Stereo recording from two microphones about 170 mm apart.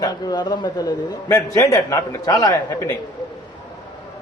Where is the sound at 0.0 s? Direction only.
25° left (ahead or behind).